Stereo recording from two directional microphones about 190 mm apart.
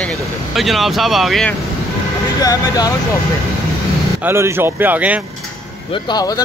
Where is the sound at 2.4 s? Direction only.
20° left (ahead or behind).